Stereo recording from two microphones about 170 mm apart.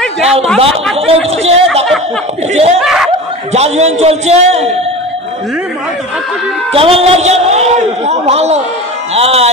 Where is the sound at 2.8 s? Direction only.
Centre (ahead or behind).